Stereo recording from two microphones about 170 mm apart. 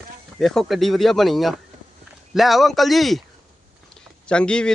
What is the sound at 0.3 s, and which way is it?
A man's voice, centre (ahead or behind).